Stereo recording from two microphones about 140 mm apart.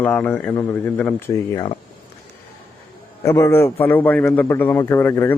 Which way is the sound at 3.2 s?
20° left (ahead or behind).